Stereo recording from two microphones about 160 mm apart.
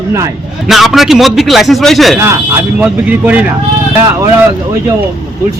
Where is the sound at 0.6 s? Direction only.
Centre (ahead or behind).